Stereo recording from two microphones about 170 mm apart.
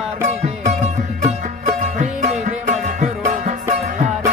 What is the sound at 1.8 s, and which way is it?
Music, 40° right (ahead or behind).